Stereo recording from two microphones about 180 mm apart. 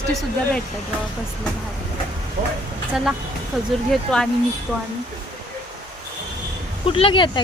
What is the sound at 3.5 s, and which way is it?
Speech, centre (ahead or behind).